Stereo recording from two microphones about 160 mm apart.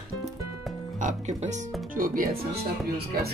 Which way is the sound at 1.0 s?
50° right (ahead or behind).